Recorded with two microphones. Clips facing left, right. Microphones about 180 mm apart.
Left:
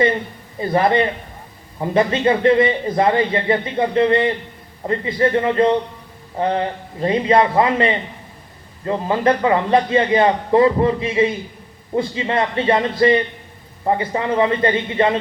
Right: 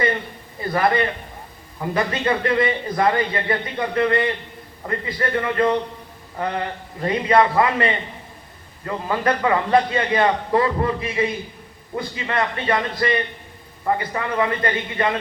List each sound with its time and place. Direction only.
0.6 s a man's voice: 25° left (ahead or behind)